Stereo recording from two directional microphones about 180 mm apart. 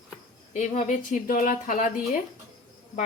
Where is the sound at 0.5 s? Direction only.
45° left (ahead or behind).